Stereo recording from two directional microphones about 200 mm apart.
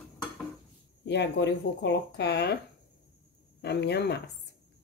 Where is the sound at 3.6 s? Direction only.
55° left (ahead or behind).